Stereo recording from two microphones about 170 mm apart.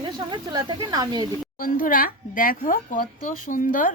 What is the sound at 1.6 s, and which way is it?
Speech, 55° left (ahead or behind).